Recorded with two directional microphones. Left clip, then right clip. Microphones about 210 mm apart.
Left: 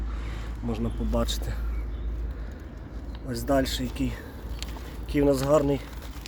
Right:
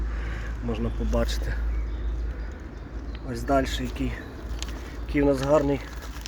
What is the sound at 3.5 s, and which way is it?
Speech, 15° left (ahead or behind).